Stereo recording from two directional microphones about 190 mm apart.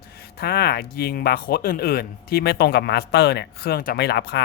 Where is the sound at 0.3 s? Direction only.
55° left (ahead or behind).